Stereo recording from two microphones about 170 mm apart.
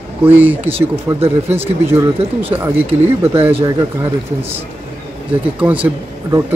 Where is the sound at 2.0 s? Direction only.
35° right (ahead or behind).